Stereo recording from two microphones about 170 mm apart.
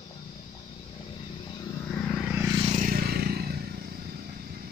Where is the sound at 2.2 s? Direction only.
10° right (ahead or behind).